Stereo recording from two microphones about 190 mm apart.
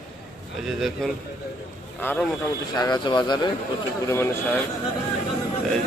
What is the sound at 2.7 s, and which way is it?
Speech, 20° left (ahead or behind).